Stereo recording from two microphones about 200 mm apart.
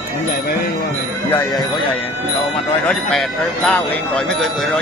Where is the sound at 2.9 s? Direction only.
Centre (ahead or behind).